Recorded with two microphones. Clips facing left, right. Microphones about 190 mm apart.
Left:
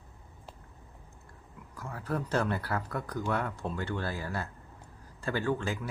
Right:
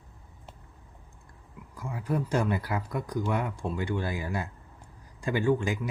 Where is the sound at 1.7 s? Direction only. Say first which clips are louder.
Right 4 dB; 10° right (ahead or behind).